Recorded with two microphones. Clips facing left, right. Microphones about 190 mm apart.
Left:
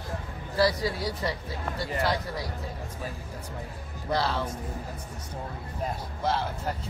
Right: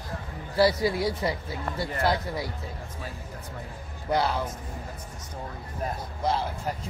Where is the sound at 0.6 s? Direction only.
25° right (ahead or behind).